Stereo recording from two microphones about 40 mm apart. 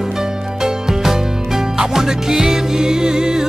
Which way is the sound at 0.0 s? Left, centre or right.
Centre.